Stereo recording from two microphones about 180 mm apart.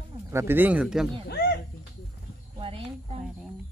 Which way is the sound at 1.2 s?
65° left (ahead or behind).